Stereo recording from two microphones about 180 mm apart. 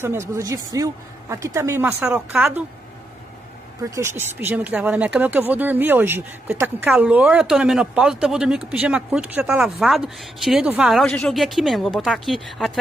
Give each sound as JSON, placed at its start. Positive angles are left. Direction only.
{"t": 0.0, "sound": "speech", "side_deg": -15}
{"t": 3.9, "sound": "speech", "side_deg": -15}